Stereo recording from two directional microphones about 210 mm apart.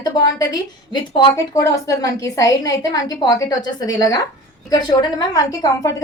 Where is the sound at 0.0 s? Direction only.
20° left (ahead or behind).